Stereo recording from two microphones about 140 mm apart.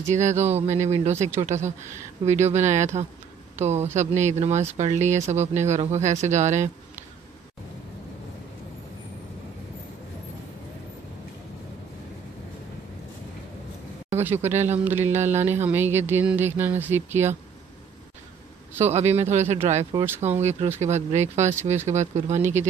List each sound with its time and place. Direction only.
0.1 s speech: 55° right (ahead or behind)
14.1 s speech: 15° right (ahead or behind)
18.8 s speech: 50° right (ahead or behind)